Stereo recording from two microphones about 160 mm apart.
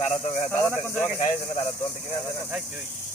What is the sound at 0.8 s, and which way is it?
Speech, 5° left (ahead or behind).